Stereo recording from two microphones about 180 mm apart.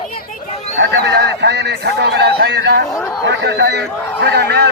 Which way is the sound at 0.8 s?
70° right (ahead or behind).